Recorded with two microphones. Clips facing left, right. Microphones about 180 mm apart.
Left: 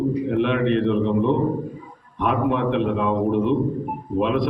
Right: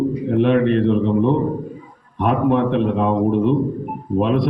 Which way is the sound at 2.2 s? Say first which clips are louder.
Right 4 dB; 40° right (ahead or behind).